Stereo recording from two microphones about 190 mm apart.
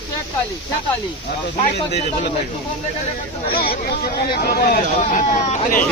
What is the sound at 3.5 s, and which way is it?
Speech, 50° left (ahead or behind).